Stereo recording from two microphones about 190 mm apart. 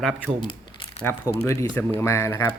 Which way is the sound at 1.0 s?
10° left (ahead or behind).